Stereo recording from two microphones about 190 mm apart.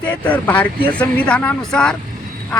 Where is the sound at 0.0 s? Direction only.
10° left (ahead or behind).